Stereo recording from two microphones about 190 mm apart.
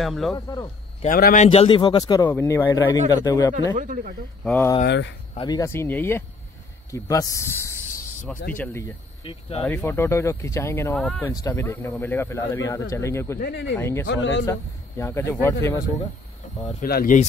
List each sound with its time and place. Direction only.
0.0 s speech: centre (ahead or behind)
1.0 s a man's voice: 45° left (ahead or behind); by 3.5 s 20° left (ahead or behind)
3.7 s speech: 45° right (ahead or behind)
4.8 s a man's voice: 70° left (ahead or behind)
5.3 s speech: 25° left (ahead or behind)
9.2 s a man's voice: 30° left (ahead or behind)
9.6 s speech: 10° left (ahead or behind)
11.2 s speech: 15° left (ahead or behind)
13.4 s speech: 65° left (ahead or behind)
13.7 s speech: 15° left (ahead or behind)
14.0 s a man's voice: 70° left (ahead or behind)
14.4 s speech: 15° left (ahead or behind)
16.4 s insect: 40° left (ahead or behind)
16.8 s speech: 50° left (ahead or behind)